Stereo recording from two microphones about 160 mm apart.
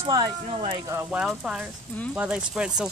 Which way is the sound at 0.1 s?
30° right (ahead or behind).